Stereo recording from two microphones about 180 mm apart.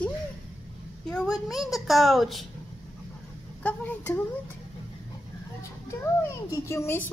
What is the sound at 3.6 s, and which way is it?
Speech, 10° left (ahead or behind).